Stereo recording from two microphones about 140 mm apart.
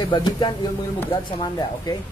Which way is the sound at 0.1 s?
30° left (ahead or behind).